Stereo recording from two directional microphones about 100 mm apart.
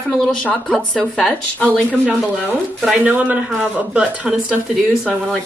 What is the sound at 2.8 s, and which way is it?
Speech, 10° right (ahead or behind).